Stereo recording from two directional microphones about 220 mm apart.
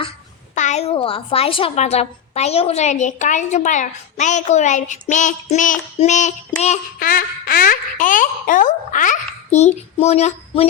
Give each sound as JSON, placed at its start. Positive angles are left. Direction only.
{"t": 0.5, "sound": "a child's voice", "side_deg": 30}